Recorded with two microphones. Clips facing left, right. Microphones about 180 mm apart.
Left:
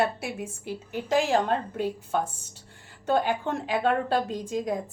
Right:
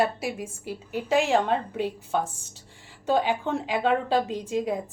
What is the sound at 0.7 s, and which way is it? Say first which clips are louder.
A woman's voice: right 1 dB; centre (ahead or behind).